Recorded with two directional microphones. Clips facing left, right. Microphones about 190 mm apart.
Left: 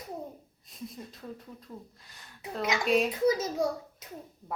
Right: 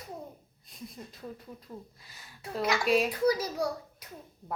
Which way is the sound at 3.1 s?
20° left (ahead or behind).